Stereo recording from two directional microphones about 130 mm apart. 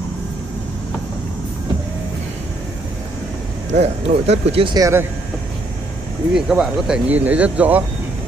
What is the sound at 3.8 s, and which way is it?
Speech, 55° right (ahead or behind).